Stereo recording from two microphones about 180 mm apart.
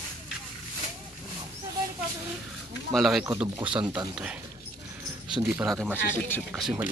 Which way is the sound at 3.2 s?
25° right (ahead or behind).